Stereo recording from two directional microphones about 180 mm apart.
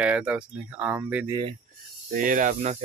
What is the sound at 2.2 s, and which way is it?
Speech, 50° right (ahead or behind).